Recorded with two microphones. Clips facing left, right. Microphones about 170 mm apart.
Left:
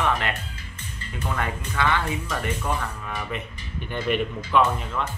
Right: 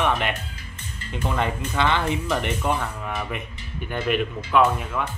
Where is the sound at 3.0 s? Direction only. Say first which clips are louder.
Right 2 dB; 10° right (ahead or behind).